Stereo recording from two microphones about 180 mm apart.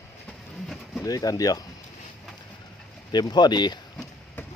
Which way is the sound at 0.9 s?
20° left (ahead or behind).